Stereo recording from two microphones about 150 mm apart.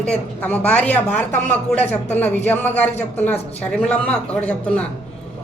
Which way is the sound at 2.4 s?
10° left (ahead or behind).